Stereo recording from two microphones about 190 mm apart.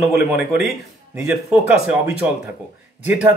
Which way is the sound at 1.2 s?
10° right (ahead or behind).